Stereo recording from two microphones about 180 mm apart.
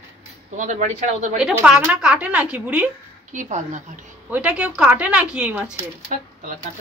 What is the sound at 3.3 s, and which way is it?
Speech, 45° right (ahead or behind).